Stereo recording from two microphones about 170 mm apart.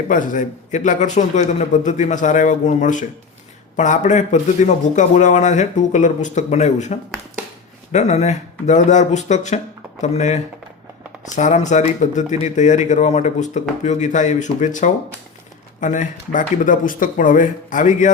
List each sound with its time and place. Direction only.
0.1 s speech: 50° left (ahead or behind)